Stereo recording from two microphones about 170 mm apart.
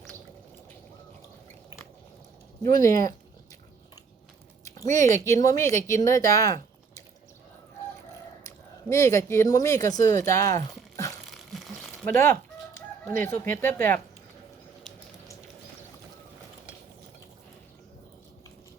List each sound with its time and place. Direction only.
2.8 s speech: 20° left (ahead or behind)
4.6 s a sound: 20° left (ahead or behind)
5.0 s speech: 15° left (ahead or behind)
8.4 s speech: 15° left (ahead or behind)
11.3 s crumpling: centre (ahead or behind)
12.0 s chicken: 15° left (ahead or behind)